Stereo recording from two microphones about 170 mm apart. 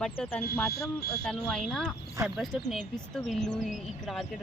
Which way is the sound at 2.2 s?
15° right (ahead or behind).